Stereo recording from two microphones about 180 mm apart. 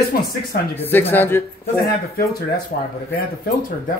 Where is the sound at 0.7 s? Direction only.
10° left (ahead or behind).